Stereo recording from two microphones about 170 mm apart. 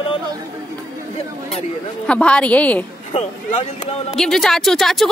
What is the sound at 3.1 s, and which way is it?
Speech, 40° left (ahead or behind).